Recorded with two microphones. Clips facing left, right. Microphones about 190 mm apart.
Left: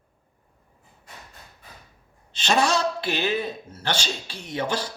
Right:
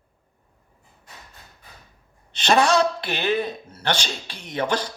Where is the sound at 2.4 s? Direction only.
60° right (ahead or behind).